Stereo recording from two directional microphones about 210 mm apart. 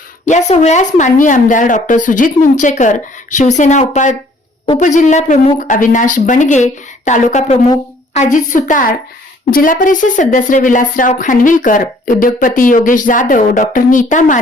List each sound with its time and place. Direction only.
0.3 s a woman's voice: 35° left (ahead or behind)